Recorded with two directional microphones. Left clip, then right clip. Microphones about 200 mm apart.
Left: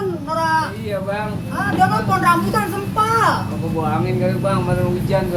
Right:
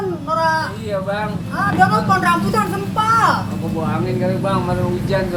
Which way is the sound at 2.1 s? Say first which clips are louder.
Even; 20° right (ahead or behind).